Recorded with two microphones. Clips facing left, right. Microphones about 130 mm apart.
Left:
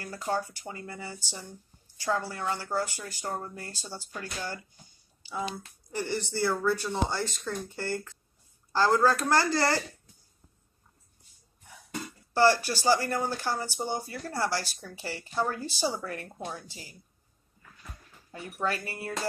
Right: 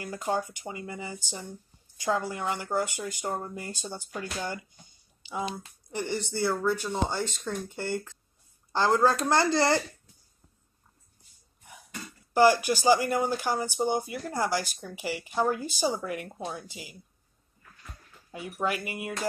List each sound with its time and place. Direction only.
0.0 s speech: 15° right (ahead or behind)
12.4 s speech: 15° right (ahead or behind)
18.3 s speech: 15° right (ahead or behind)